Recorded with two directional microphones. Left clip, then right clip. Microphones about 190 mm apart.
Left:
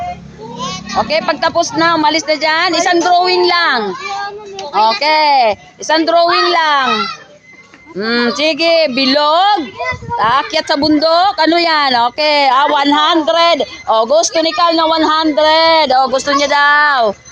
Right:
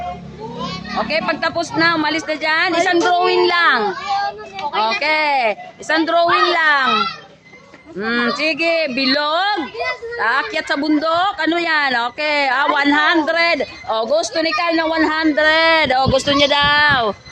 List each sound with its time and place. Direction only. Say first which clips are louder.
0.6 s a child's voice: left 6 dB; 40° left (ahead or behind)
15.2 s speech: left 1 dB; 20° left (ahead or behind)
16.0 s speech: left 3 dB; 5° right (ahead or behind)